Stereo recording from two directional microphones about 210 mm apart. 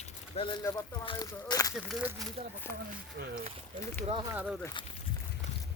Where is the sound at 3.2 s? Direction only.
50° right (ahead or behind).